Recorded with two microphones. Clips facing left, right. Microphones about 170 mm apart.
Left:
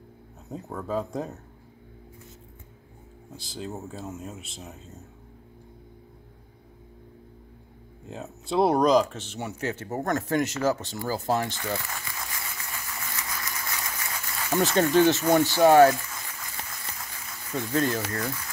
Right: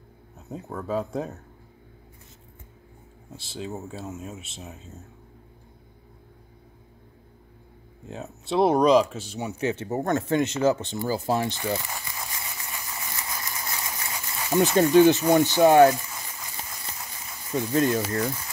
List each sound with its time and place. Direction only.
0.5 s speech: centre (ahead or behind)
3.5 s speech: 5° right (ahead or behind)
8.1 s speech: centre (ahead or behind); by 18.4 s 25° right (ahead or behind)